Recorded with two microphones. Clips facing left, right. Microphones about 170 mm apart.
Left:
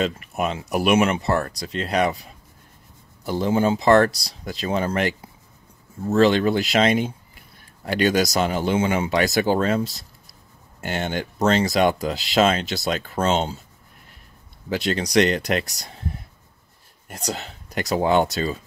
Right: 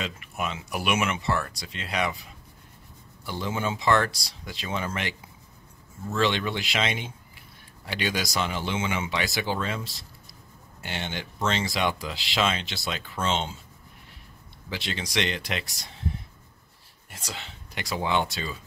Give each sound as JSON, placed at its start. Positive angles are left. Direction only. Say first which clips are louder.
{"t": 0.0, "sound": "speech", "louder": "left 8 dB", "side_deg": 40}
{"t": 3.3, "sound": "speech", "louder": "left 10 dB", "side_deg": 35}
{"t": 14.7, "sound": "speech", "louder": "left 10 dB", "side_deg": 45}
{"t": 17.1, "sound": "speech", "louder": "left 10 dB", "side_deg": 40}